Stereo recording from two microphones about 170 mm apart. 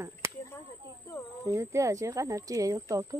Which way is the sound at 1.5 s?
15° right (ahead or behind).